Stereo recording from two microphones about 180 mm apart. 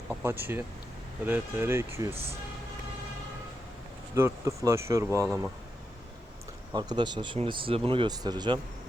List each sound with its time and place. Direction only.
0.1 s speech: 10° right (ahead or behind)
4.1 s speech: 15° right (ahead or behind)
6.7 s speech: 25° right (ahead or behind)